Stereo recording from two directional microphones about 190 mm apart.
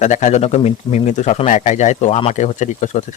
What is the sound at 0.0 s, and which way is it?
Speech, 40° left (ahead or behind).